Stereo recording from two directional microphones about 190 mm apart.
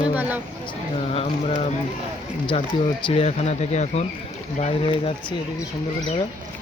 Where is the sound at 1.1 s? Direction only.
30° left (ahead or behind).